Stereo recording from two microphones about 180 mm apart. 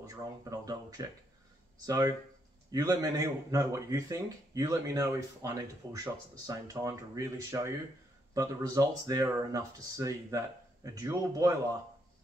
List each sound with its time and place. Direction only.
0.0 s speech: 20° right (ahead or behind)